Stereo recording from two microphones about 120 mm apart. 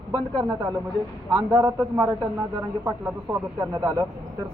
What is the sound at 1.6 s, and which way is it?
A man's voice, 20° right (ahead or behind).